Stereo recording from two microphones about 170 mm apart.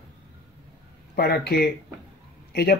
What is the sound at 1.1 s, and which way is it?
Speech, 70° left (ahead or behind).